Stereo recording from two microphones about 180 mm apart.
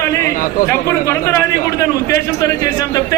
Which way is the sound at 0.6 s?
15° left (ahead or behind).